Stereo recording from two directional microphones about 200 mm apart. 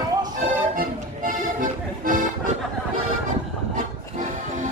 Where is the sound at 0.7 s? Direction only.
45° right (ahead or behind).